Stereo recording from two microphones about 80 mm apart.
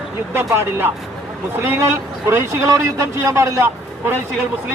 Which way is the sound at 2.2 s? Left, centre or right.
Right.